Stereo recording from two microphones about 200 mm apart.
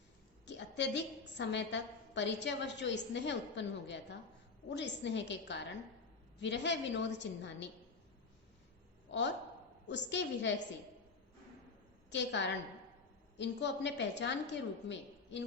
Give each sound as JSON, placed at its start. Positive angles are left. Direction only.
{"t": 0.4, "sound": "a woman's voice", "side_deg": 60}
{"t": 9.9, "sound": "a woman's voice", "side_deg": 60}
{"t": 12.1, "sound": "a woman's voice", "side_deg": 60}